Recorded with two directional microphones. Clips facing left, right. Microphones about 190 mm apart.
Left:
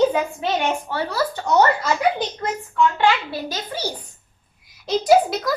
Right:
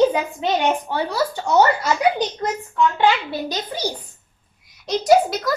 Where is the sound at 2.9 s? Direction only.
15° right (ahead or behind).